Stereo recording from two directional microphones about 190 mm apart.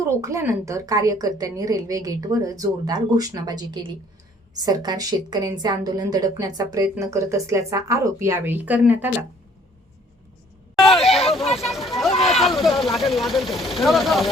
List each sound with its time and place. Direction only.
0.0 s a woman's voice: 15° right (ahead or behind)
10.8 s speech: centre (ahead or behind)